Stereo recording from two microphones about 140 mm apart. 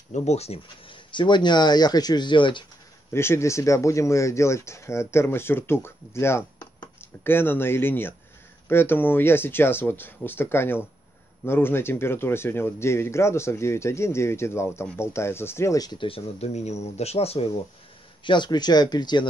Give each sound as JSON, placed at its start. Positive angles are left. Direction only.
{"t": 0.1, "sound": "speech", "side_deg": 55}
{"t": 3.1, "sound": "speech", "side_deg": 20}
{"t": 18.2, "sound": "speech", "side_deg": 35}